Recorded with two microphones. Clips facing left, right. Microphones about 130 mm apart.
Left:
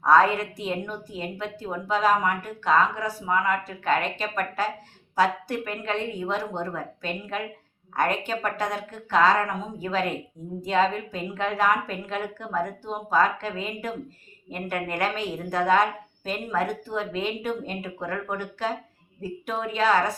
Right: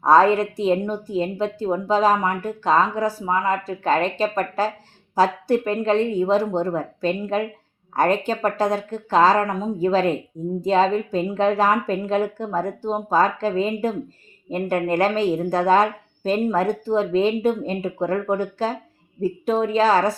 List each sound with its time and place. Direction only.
0.0 s a woman's voice: 35° right (ahead or behind)